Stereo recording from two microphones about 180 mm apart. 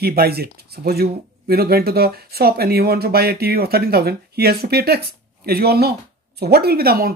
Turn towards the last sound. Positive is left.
turn(degrees=-55)  # may be behind; listen again after turning